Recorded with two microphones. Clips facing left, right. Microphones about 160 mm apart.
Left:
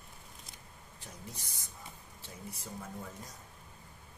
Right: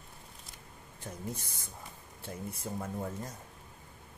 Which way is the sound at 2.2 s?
55° right (ahead or behind).